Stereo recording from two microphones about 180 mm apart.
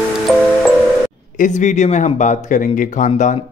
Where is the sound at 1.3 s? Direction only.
45° left (ahead or behind).